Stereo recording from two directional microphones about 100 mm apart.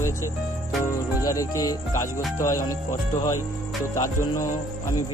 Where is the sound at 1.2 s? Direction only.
35° left (ahead or behind).